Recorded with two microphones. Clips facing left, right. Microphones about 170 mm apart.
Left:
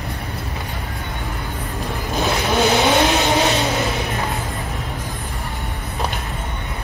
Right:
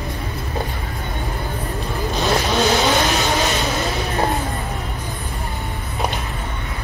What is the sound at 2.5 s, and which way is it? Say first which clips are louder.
Vehicle: left 4 dB; 15° left (ahead or behind).